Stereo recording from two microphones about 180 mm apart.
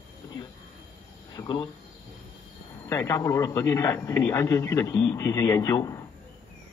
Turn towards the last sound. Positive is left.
turn(degrees=20)  # may be behind; listen again after turning